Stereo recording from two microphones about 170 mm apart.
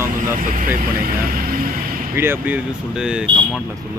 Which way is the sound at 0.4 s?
55° right (ahead or behind).